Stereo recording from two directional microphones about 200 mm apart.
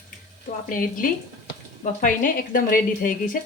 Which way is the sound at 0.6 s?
45° left (ahead or behind).